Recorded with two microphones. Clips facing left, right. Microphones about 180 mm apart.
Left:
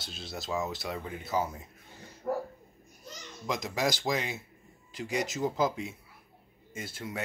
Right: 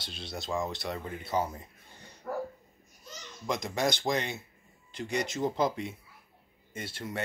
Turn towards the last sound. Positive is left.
turn(degrees=0)  # may be behind; listen again after turning